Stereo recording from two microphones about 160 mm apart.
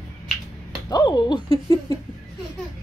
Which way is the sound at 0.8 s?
25° left (ahead or behind).